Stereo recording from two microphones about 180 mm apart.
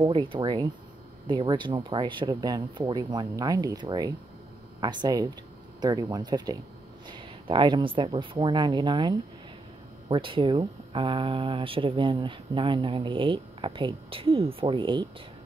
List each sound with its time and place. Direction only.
0.0 s speech: 25° right (ahead or behind)